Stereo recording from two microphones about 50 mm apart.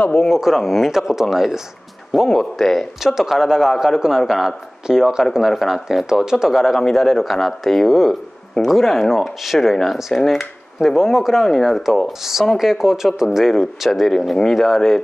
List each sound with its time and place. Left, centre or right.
0.0 s speech: left
0.3 s speech: centre
2.2 s speech: centre